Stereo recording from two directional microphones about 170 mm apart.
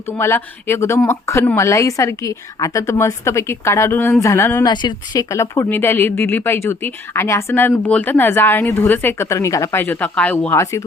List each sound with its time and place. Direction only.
0.2 s speech: 15° left (ahead or behind)
4.7 s speech: 25° left (ahead or behind)